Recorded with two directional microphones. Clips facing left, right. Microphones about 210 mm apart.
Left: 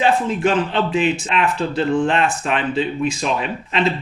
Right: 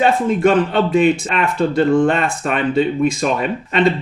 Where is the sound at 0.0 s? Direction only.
50° right (ahead or behind).